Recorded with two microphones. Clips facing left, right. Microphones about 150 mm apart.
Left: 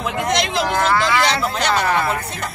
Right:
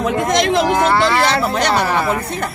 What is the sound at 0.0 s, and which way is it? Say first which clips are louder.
Speech: right 5 dB; 45° right (ahead or behind).